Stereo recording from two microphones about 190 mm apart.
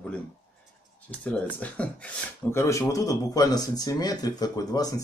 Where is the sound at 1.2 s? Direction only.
10° left (ahead or behind).